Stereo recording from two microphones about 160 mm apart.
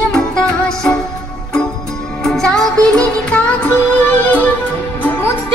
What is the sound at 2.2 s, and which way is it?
Music, 5° left (ahead or behind).